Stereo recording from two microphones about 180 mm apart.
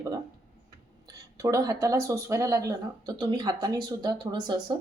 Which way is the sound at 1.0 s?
20° right (ahead or behind).